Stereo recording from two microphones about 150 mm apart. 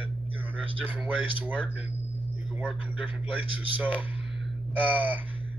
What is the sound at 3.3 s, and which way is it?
Speech, 10° right (ahead or behind).